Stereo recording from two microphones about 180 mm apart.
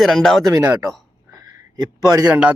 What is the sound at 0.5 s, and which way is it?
Speech, 15° right (ahead or behind).